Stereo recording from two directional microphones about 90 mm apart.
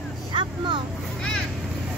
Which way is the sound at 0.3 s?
60° right (ahead or behind).